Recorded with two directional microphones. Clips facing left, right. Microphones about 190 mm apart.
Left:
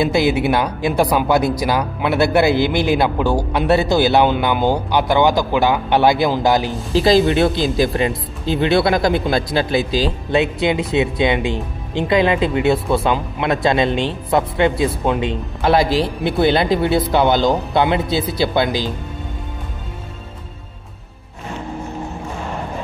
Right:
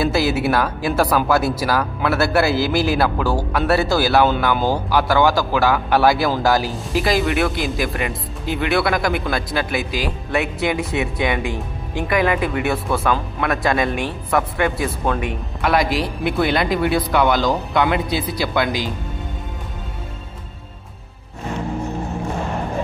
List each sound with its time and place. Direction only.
0.0 s a man's voice: 20° left (ahead or behind)